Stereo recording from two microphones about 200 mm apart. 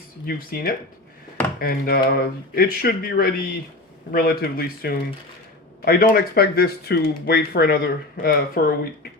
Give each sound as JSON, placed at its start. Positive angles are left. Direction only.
{"t": 0.3, "sound": "speech", "side_deg": 45}